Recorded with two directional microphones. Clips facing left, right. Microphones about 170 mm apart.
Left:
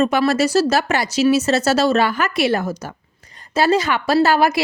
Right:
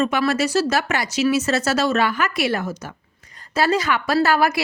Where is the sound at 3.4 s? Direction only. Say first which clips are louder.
Left 3 dB; 25° left (ahead or behind).